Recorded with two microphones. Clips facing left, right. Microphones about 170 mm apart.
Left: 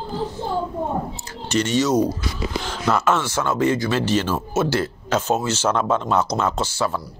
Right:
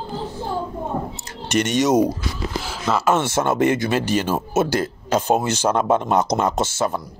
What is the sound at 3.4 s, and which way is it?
Speech, 55° right (ahead or behind).